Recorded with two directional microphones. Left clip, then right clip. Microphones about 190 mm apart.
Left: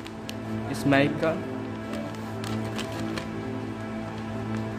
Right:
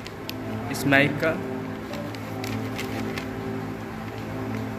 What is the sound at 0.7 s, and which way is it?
Speech, 30° left (ahead or behind).